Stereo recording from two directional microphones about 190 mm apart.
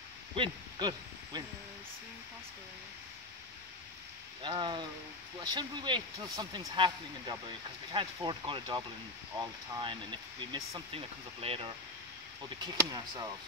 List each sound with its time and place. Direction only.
0.4 s speech: 25° right (ahead or behind)
4.4 s speech: 25° right (ahead or behind)